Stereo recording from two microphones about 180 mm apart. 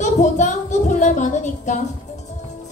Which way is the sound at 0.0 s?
40° left (ahead or behind).